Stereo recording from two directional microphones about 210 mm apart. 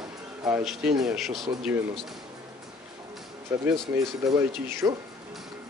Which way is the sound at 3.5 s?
10° right (ahead or behind).